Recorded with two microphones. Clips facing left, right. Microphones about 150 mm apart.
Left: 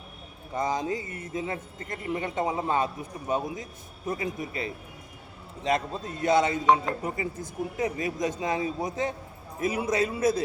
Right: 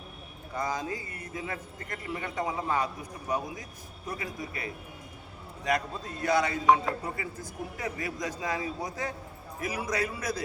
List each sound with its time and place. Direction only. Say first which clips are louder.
0.5 s a man's voice: left 4 dB; 20° left (ahead or behind)